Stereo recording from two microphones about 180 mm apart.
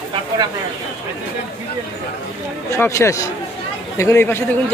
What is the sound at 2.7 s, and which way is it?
Speech, 15° left (ahead or behind).